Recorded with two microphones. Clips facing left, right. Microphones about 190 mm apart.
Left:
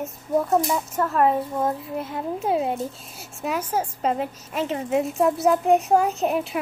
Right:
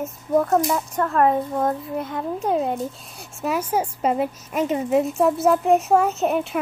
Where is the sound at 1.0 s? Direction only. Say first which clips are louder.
Right 1 dB; 50° right (ahead or behind).